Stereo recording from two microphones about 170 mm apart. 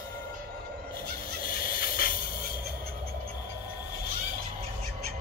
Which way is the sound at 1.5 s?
60° left (ahead or behind).